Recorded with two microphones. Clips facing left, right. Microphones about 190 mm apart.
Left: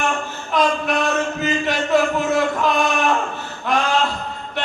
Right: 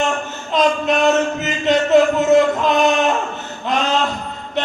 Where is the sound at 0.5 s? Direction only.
20° right (ahead or behind).